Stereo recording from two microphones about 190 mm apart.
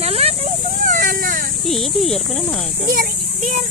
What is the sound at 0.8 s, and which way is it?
Speech, 45° right (ahead or behind).